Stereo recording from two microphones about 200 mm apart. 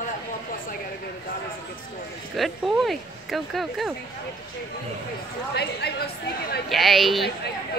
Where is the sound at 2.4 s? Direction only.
Centre (ahead or behind).